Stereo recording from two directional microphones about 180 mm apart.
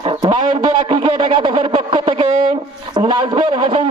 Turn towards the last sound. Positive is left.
turn(degrees=-25)  # may be behind; listen again after turning